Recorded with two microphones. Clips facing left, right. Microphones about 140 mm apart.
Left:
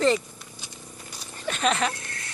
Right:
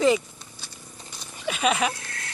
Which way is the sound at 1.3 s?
5° right (ahead or behind).